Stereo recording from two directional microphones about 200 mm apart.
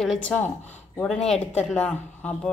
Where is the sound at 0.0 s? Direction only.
5° left (ahead or behind).